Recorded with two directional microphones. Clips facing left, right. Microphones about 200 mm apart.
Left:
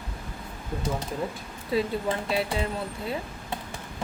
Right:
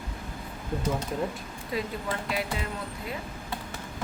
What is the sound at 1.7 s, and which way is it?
Speech, 30° left (ahead or behind).